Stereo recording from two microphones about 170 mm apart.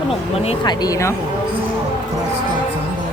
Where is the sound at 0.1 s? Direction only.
35° left (ahead or behind); by 1.1 s 20° left (ahead or behind).